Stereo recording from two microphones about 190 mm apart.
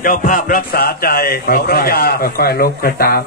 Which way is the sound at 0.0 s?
45° left (ahead or behind).